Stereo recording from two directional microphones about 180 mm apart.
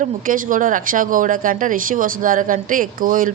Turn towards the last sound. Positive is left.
turn(degrees=-50)  # may be behind; listen again after turning